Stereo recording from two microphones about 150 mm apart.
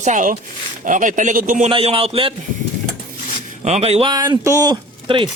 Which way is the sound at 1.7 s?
35° right (ahead or behind).